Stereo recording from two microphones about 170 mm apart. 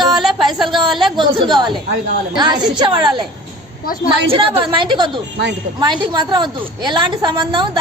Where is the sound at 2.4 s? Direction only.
25° right (ahead or behind).